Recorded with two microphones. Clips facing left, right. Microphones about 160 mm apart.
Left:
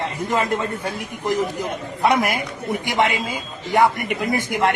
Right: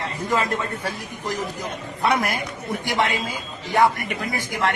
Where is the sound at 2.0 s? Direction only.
20° left (ahead or behind).